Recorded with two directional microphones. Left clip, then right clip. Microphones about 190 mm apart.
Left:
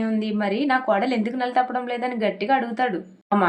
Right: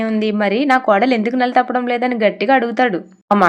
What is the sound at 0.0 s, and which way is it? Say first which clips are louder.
A woman's voice: right 8 dB; 40° right (ahead or behind).